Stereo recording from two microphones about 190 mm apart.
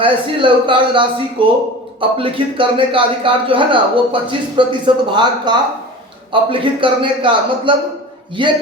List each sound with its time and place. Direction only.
0.0 s a man's voice: 25° right (ahead or behind)